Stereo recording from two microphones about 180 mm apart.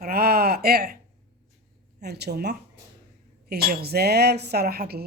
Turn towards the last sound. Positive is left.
turn(degrees=-55)  # may be behind; listen again after turning